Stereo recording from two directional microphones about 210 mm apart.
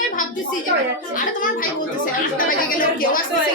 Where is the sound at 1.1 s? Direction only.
40° left (ahead or behind).